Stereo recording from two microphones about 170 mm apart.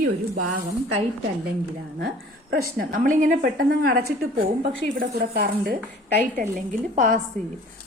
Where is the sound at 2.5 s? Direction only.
60° right (ahead or behind).